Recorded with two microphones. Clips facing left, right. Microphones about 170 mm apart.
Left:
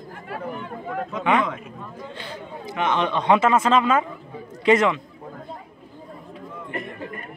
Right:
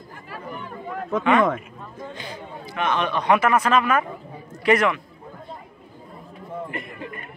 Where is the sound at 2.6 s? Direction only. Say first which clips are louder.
Left 1 dB; 20° left (ahead or behind).